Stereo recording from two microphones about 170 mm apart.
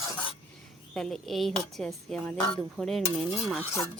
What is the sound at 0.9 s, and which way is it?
A woman's voice, 5° left (ahead or behind).